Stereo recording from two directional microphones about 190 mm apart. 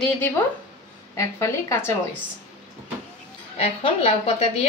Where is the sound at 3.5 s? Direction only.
30° left (ahead or behind).